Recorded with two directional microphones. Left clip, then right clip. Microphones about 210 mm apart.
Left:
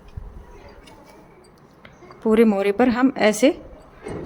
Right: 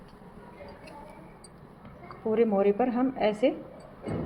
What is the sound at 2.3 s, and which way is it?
A woman's voice, 45° left (ahead or behind).